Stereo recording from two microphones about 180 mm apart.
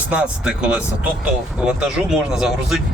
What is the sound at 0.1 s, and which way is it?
Speech, 5° right (ahead or behind).